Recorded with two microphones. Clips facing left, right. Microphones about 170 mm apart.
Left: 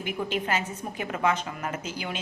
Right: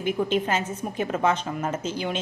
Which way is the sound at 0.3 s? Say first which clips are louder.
Right 4 dB; 25° right (ahead or behind).